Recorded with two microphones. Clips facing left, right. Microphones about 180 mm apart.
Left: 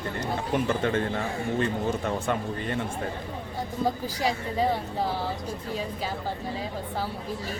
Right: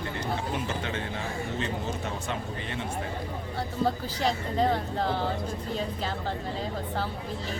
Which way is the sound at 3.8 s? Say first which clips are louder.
Even; 10° left (ahead or behind).